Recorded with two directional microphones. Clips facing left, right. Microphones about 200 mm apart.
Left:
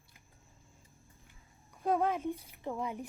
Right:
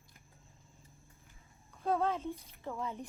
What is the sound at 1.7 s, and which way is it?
A woman's voice, 15° left (ahead or behind).